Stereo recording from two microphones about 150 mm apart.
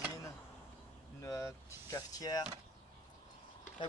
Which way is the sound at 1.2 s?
20° left (ahead or behind).